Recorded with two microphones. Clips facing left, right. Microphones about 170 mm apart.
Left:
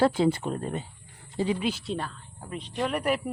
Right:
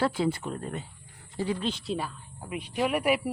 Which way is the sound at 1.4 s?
15° left (ahead or behind).